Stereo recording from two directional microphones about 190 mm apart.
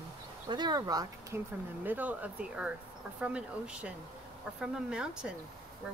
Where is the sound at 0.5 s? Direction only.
20° right (ahead or behind).